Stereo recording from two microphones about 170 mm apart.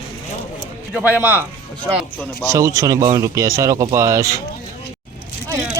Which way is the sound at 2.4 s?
20° right (ahead or behind).